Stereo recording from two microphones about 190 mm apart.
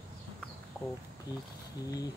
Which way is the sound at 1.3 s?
20° left (ahead or behind).